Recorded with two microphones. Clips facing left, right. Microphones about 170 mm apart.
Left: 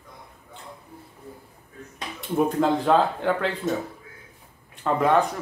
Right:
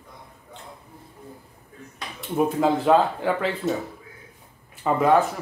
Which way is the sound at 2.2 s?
5° right (ahead or behind).